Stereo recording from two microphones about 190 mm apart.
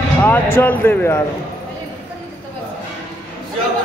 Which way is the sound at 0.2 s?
10° left (ahead or behind).